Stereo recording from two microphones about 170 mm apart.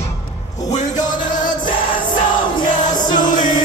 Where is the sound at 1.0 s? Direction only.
50° left (ahead or behind).